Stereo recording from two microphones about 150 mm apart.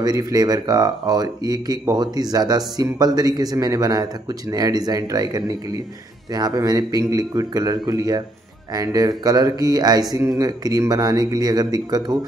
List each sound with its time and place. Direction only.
0.0 s speech: 25° right (ahead or behind)